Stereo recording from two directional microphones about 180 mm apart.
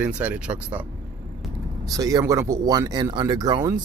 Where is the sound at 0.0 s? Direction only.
10° right (ahead or behind).